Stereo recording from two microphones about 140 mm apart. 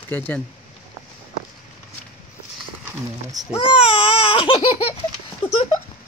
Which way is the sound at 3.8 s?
40° left (ahead or behind).